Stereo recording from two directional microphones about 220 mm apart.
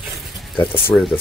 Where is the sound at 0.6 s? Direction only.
10° left (ahead or behind).